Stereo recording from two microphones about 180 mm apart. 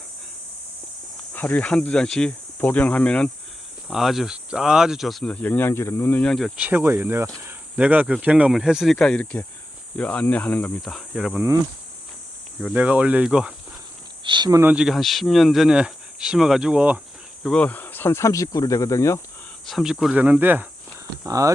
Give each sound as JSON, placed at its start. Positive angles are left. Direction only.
{"t": 1.3, "sound": "speech", "side_deg": 10}
{"t": 6.7, "sound": "speech", "side_deg": -10}
{"t": 12.6, "sound": "speech", "side_deg": -5}
{"t": 14.3, "sound": "speech", "side_deg": -25}
{"t": 14.6, "sound": "speech", "side_deg": -5}
{"t": 17.4, "sound": "speech", "side_deg": 5}
{"t": 19.6, "sound": "speech", "side_deg": 0}